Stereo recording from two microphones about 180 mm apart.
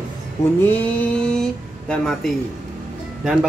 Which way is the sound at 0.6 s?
10° left (ahead or behind).